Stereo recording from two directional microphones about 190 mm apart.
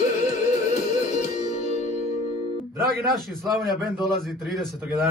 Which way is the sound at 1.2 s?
40° left (ahead or behind).